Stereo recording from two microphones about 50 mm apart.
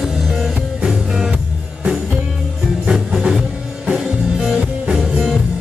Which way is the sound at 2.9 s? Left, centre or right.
Centre.